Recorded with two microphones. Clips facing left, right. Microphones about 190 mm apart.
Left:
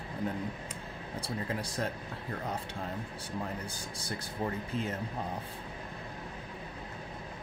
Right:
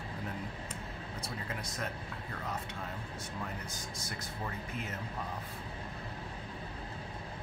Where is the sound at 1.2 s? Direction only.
30° left (ahead or behind).